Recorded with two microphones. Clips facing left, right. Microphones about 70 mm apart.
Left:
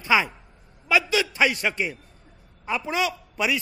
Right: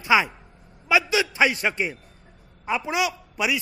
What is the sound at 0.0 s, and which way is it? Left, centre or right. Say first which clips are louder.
A man's voice: right 2 dB; centre.